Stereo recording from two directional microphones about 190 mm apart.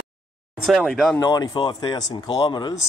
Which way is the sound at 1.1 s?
20° left (ahead or behind).